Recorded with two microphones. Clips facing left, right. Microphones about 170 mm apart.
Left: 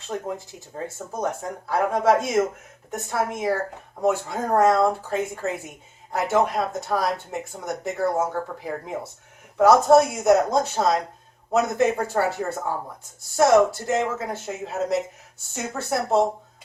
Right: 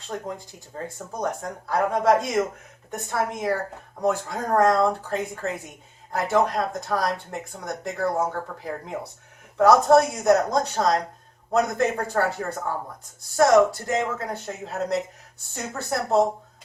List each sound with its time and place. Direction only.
0.1 s speech: 5° left (ahead or behind)